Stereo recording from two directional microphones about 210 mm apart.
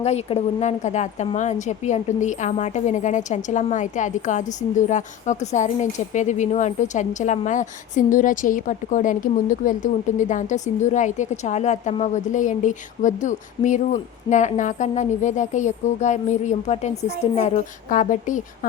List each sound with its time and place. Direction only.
0.0 s a woman's voice: 30° left (ahead or behind)